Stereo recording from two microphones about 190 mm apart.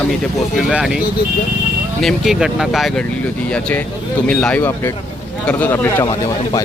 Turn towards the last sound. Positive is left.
turn(degrees=15)  # may be behind; listen again after turning